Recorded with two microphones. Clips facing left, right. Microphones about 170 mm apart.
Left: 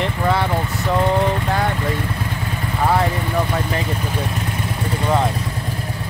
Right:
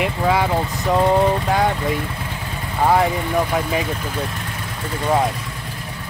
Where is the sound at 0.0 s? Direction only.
10° right (ahead or behind).